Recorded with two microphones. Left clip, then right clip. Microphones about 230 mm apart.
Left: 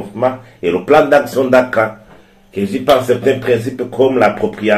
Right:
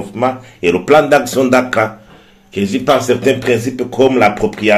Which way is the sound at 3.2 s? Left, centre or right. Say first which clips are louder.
Even; right.